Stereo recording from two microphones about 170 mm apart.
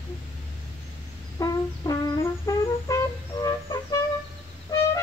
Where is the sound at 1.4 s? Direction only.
20° left (ahead or behind).